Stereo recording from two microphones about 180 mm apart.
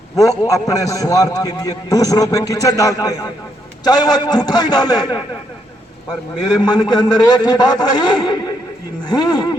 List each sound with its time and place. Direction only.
0.2 s a man's voice: 20° left (ahead or behind)
6.6 s a man's voice: 25° left (ahead or behind)